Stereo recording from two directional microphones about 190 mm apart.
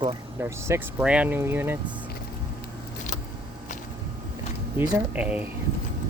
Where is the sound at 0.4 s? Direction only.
10° right (ahead or behind).